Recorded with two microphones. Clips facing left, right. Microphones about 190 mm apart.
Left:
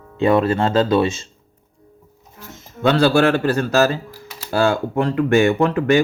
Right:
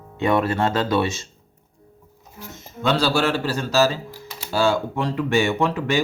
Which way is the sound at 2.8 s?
55° left (ahead or behind).